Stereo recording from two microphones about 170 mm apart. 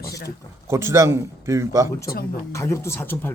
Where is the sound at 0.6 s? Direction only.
15° right (ahead or behind).